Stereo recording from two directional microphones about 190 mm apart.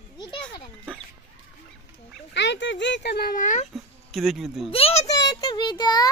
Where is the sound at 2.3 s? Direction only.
65° left (ahead or behind); by 3.7 s 40° left (ahead or behind).